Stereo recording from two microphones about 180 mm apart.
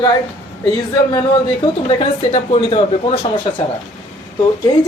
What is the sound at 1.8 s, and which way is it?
Speech, 35° left (ahead or behind).